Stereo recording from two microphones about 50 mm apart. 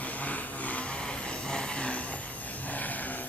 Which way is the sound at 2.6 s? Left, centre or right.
Left.